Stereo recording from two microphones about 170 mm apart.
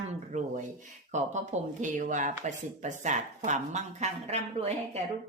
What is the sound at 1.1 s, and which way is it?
Speech, 45° right (ahead or behind).